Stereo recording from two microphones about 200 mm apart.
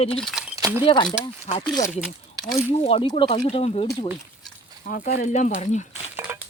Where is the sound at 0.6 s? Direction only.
20° right (ahead or behind).